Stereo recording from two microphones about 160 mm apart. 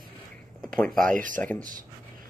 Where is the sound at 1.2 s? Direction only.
55° right (ahead or behind).